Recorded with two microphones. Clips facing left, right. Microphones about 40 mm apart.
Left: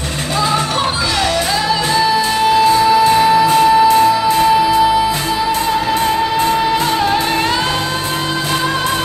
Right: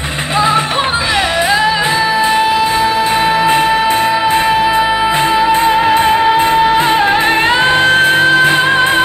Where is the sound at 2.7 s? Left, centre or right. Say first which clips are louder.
Left 2 dB; right.